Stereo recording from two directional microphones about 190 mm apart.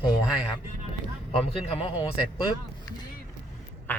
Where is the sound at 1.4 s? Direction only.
30° left (ahead or behind).